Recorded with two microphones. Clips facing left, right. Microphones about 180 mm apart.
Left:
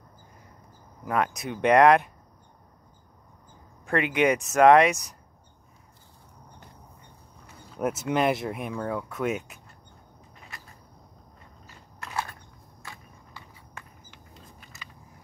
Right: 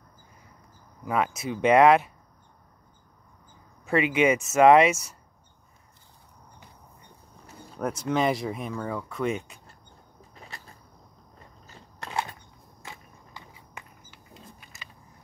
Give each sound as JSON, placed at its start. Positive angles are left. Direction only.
{"t": 1.0, "sound": "speech", "side_deg": 0}
{"t": 3.8, "sound": "speech", "side_deg": -5}
{"t": 8.0, "sound": "speech", "side_deg": 5}
{"t": 12.0, "sound": "a sound", "side_deg": -25}